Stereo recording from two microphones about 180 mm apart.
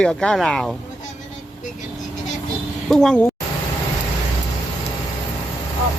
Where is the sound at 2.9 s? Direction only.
5° left (ahead or behind).